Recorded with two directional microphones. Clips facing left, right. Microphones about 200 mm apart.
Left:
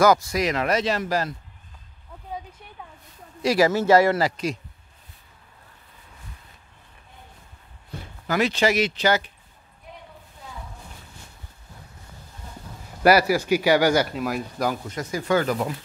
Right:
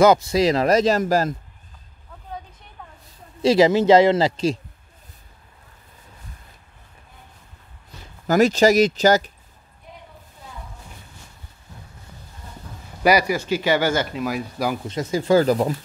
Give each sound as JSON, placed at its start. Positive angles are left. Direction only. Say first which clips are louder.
{"t": 0.0, "sound": "speech", "louder": "right 4 dB", "side_deg": -25}
{"t": 3.4, "sound": "speech", "louder": "right 4 dB", "side_deg": -20}
{"t": 8.3, "sound": "speech", "louder": "right 6 dB", "side_deg": -40}
{"t": 13.0, "sound": "speech", "louder": "left 1 dB", "side_deg": 5}
{"t": 14.1, "sound": "speech", "louder": "right 1 dB", "side_deg": 0}
{"t": 14.9, "sound": "speech", "louder": "right 5 dB", "side_deg": -25}